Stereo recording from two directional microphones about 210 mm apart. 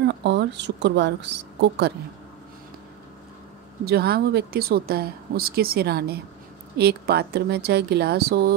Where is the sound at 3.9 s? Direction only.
50° right (ahead or behind).